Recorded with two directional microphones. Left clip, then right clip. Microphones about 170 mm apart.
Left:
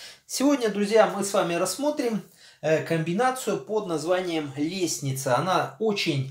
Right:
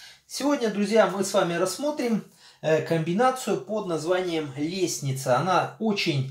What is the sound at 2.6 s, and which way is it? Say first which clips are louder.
Speech: right 1 dB; 20° left (ahead or behind).